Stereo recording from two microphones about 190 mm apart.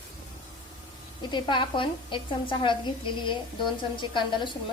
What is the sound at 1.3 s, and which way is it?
A woman's voice, 25° left (ahead or behind).